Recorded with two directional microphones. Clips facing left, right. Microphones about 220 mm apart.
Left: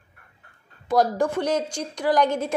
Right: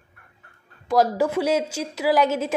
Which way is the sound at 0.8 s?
Centre (ahead or behind).